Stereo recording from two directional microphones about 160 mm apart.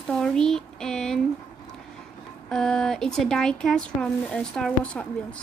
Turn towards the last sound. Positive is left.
turn(degrees=5)  # may be behind; listen again after turning